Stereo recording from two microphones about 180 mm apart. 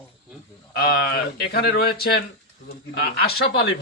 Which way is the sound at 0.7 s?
60° left (ahead or behind).